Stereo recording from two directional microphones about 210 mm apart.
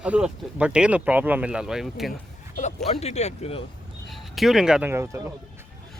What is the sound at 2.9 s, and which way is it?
Speech, 30° left (ahead or behind).